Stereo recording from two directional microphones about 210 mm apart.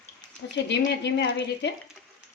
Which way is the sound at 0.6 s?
55° left (ahead or behind).